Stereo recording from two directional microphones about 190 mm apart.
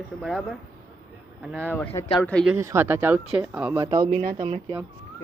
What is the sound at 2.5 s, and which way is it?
Speech, 15° right (ahead or behind).